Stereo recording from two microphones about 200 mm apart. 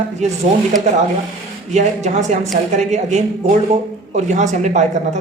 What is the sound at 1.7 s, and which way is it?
Speech, 35° right (ahead or behind).